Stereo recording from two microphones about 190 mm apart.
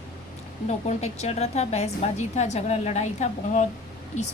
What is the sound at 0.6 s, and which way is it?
A woman's voice, 35° left (ahead or behind).